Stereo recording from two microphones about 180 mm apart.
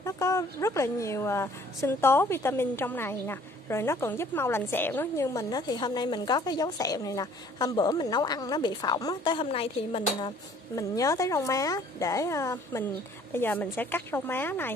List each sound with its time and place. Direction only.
0.0 s a woman's voice: 15° left (ahead or behind); by 10.3 s 30° left (ahead or behind)
10.8 s a woman's voice: 20° left (ahead or behind)